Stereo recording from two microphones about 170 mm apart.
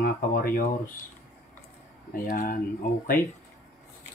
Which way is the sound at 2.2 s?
50° left (ahead or behind).